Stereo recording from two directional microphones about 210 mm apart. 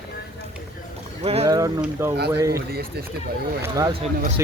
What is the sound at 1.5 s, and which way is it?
Speech, 15° right (ahead or behind).